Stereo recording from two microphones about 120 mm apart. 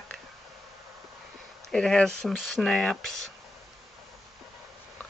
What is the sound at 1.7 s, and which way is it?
Speech, 5° left (ahead or behind).